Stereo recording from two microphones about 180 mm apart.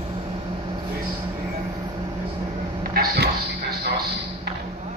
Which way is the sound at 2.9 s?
60° right (ahead or behind).